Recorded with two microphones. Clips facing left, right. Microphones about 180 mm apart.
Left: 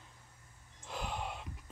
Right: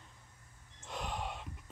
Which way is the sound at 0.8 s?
Centre (ahead or behind).